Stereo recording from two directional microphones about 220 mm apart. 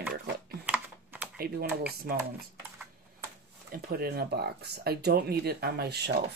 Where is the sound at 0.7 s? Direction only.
5° right (ahead or behind).